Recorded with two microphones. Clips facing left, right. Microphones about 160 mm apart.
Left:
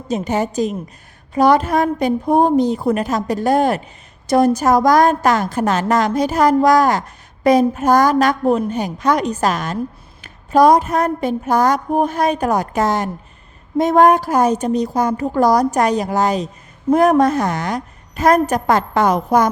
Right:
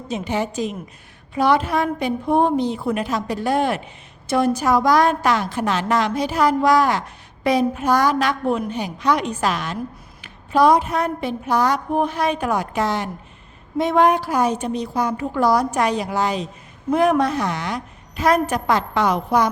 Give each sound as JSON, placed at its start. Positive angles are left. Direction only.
{"t": 0.1, "sound": "a woman's voice", "side_deg": 45}